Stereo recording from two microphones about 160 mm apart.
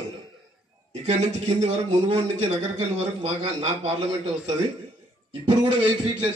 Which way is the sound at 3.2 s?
40° right (ahead or behind).